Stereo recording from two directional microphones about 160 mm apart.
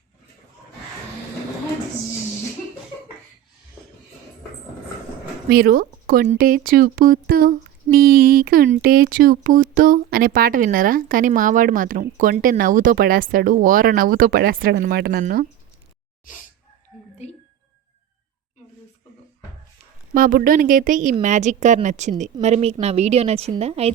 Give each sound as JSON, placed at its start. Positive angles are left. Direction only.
{"t": 5.5, "sound": "speech", "side_deg": -70}
{"t": 16.9, "sound": "whispering", "side_deg": -5}
{"t": 20.1, "sound": "a woman's voice", "side_deg": -60}